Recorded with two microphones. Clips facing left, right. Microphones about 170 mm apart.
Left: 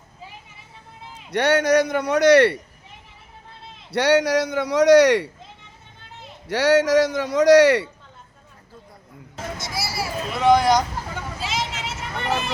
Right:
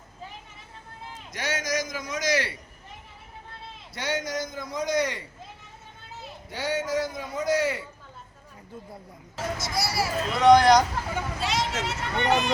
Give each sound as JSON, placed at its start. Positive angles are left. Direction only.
{"t": 1.3, "sound": "a man's voice", "side_deg": 65}
{"t": 3.9, "sound": "a man's voice", "side_deg": 70}
{"t": 6.5, "sound": "a man's voice", "side_deg": 80}
{"t": 9.6, "sound": "speech", "side_deg": 0}
{"t": 11.3, "sound": "vehicle", "side_deg": 0}